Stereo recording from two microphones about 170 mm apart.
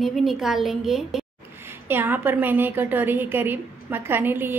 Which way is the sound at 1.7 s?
10° right (ahead or behind).